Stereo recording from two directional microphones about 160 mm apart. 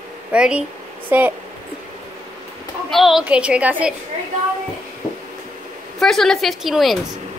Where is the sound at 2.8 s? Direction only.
Centre (ahead or behind).